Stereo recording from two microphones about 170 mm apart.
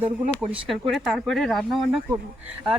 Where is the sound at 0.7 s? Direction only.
Centre (ahead or behind).